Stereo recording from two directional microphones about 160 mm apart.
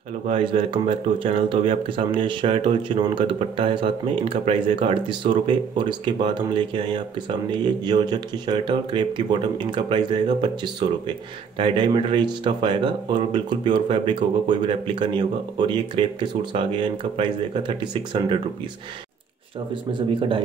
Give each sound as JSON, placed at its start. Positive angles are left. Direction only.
{"t": 0.3, "sound": "speech", "side_deg": -35}
{"t": 19.7, "sound": "speech", "side_deg": -30}